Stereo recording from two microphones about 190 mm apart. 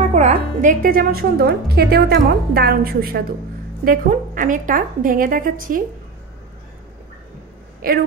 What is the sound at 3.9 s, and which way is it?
Speech, 45° right (ahead or behind).